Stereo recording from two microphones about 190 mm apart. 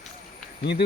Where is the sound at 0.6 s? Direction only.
60° left (ahead or behind).